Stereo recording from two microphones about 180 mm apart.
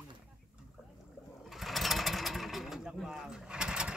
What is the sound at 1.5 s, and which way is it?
Lawn mower, centre (ahead or behind).